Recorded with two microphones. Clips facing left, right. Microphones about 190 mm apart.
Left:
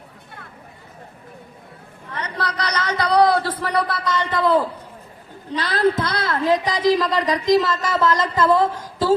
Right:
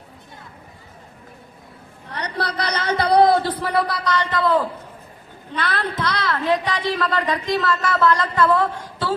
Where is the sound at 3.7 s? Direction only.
Centre (ahead or behind).